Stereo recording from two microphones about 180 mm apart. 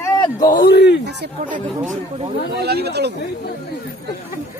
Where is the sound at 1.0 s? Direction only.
65° right (ahead or behind).